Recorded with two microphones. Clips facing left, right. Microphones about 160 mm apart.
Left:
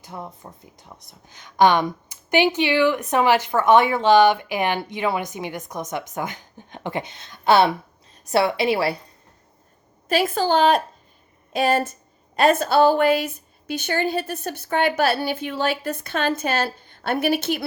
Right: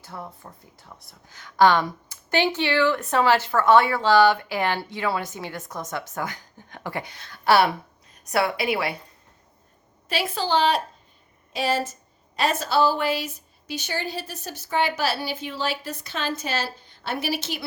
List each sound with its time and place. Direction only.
0.0 s speech: 20° left (ahead or behind)
10.1 s a woman's voice: 45° left (ahead or behind)